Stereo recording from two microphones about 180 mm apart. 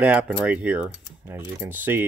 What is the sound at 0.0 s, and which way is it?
Speech, 5° right (ahead or behind).